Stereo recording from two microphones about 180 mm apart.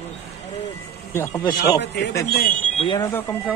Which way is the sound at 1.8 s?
70° left (ahead or behind).